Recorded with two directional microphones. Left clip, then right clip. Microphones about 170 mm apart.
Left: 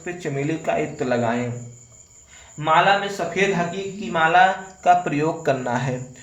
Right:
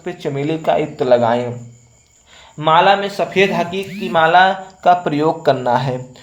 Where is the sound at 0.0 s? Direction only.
25° right (ahead or behind).